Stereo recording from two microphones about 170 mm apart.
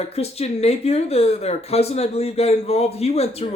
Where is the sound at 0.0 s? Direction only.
35° left (ahead or behind).